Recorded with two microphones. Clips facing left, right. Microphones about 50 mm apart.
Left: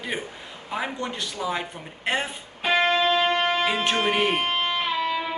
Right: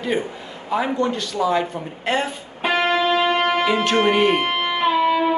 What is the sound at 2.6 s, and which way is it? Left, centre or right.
Music, right.